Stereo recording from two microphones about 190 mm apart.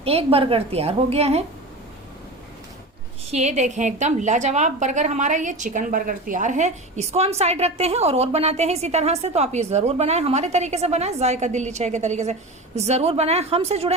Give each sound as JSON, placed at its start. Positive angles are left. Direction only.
{"t": 0.0, "sound": "a woman's voice", "side_deg": -30}
{"t": 3.3, "sound": "a woman's voice", "side_deg": -35}